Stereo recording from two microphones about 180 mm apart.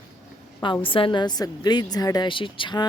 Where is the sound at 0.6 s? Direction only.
30° left (ahead or behind).